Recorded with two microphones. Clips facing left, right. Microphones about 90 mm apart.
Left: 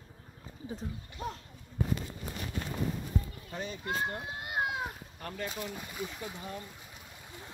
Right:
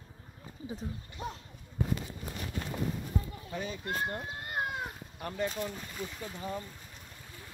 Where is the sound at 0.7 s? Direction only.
Centre (ahead or behind).